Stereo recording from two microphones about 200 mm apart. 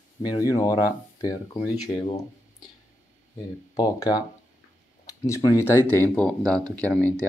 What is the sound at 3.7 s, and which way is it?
Speech, 20° left (ahead or behind).